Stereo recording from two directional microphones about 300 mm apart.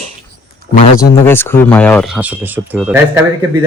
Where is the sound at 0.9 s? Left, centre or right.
Centre.